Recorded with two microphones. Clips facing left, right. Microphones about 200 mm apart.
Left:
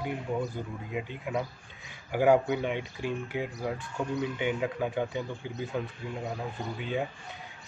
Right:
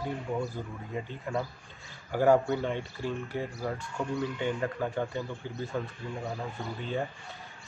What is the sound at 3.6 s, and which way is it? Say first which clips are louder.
Speech: left 1 dB; centre (ahead or behind).